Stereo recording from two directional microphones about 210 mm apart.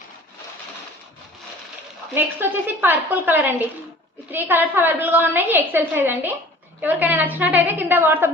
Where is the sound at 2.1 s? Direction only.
10° right (ahead or behind).